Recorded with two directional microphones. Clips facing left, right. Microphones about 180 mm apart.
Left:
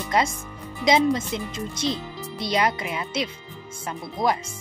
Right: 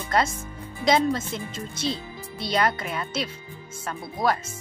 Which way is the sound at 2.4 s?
20° left (ahead or behind).